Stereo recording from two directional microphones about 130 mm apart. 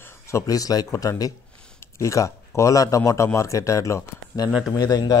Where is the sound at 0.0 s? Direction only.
20° left (ahead or behind).